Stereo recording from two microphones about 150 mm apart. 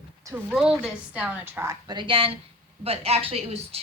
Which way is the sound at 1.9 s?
30° right (ahead or behind).